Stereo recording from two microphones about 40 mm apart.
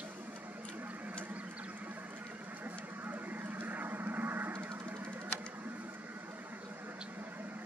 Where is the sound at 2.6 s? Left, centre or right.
Right.